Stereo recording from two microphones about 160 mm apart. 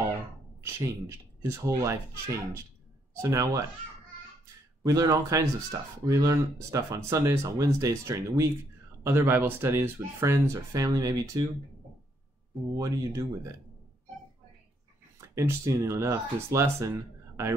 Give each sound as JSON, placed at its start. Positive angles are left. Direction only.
{"t": 0.6, "sound": "speech", "side_deg": -15}
{"t": 3.2, "sound": "speech", "side_deg": -20}
{"t": 4.8, "sound": "speech", "side_deg": -20}
{"t": 12.7, "sound": "speech", "side_deg": -20}
{"t": 15.1, "sound": "speech", "side_deg": -20}